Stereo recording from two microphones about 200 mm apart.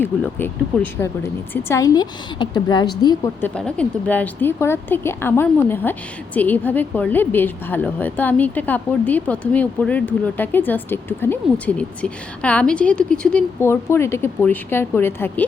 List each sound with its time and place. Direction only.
0.0 s speech: 10° left (ahead or behind)
3.4 s speech: 5° left (ahead or behind)